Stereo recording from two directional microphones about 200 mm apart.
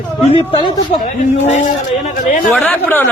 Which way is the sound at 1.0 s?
35° left (ahead or behind).